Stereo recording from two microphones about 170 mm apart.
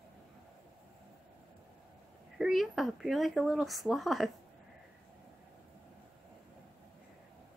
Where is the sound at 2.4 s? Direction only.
Centre (ahead or behind).